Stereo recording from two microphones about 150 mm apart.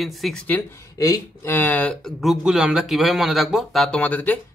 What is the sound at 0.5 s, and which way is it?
Speech, 10° left (ahead or behind).